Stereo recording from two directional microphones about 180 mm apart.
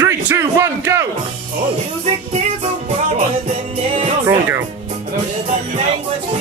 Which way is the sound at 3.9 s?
35° right (ahead or behind).